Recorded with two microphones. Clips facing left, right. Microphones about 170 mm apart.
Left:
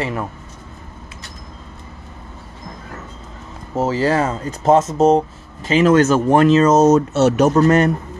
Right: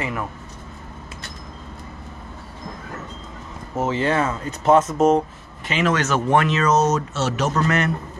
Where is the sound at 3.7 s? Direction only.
35° left (ahead or behind).